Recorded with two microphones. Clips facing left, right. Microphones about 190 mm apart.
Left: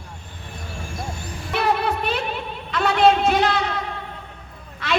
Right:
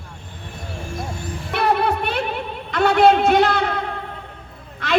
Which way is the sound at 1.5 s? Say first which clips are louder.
Right 2 dB; 60° right (ahead or behind).